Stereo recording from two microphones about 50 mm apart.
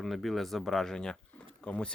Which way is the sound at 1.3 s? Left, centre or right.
Left.